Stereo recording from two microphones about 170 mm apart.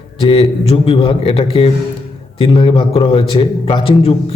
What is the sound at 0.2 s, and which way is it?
A man's voice, 35° left (ahead or behind).